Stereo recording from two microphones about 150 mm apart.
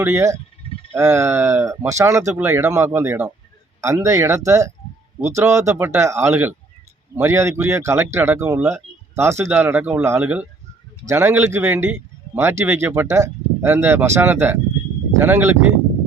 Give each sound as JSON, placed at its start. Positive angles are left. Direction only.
{"t": 0.0, "sound": "a man's voice", "side_deg": -15}